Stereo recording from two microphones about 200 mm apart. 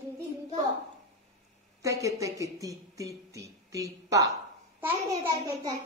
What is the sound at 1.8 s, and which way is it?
Child singing, 15° right (ahead or behind).